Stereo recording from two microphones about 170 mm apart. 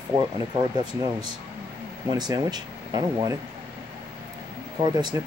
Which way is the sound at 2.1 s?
25° right (ahead or behind).